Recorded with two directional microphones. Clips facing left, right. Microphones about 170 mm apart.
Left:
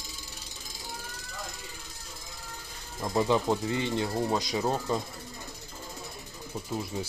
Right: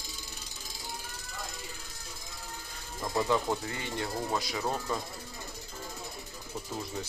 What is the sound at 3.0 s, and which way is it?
Speech, 20° left (ahead or behind).